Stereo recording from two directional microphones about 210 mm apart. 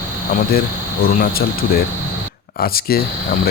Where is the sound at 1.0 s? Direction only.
45° left (ahead or behind).